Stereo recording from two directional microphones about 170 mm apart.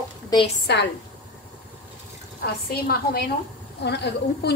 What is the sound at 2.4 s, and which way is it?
Speech, 65° left (ahead or behind).